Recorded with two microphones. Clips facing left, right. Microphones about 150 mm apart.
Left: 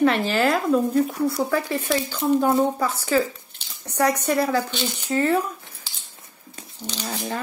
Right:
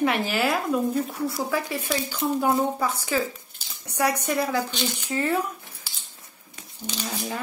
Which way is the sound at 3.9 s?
10° right (ahead or behind).